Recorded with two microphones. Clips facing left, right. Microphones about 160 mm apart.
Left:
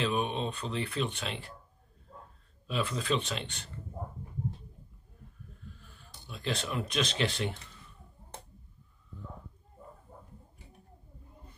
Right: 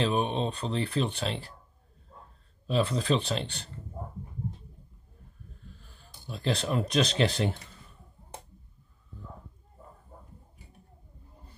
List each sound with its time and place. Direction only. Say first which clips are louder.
0.0 s speech: right 3 dB; 35° right (ahead or behind)
2.6 s speech: right 6 dB; 35° right (ahead or behind)
5.8 s speech: even; 30° right (ahead or behind)